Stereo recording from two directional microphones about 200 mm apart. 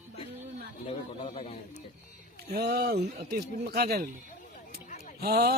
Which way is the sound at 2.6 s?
50° right (ahead or behind).